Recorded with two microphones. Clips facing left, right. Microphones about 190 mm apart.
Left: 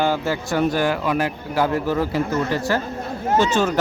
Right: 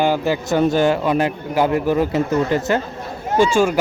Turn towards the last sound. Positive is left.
turn(degrees=-10)  # may be behind; listen again after turning